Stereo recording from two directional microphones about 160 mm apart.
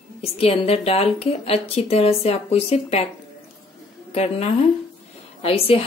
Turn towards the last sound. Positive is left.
turn(degrees=40)  # may be behind; listen again after turning